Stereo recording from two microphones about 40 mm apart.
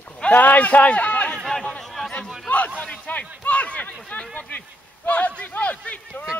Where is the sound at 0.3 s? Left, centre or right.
Left.